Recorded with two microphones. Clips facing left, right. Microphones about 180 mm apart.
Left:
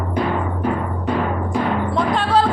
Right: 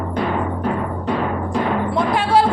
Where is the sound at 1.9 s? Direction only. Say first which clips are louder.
Right 2 dB; 10° right (ahead or behind).